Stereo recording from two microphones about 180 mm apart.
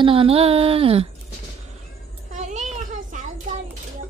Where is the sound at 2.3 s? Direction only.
40° right (ahead or behind).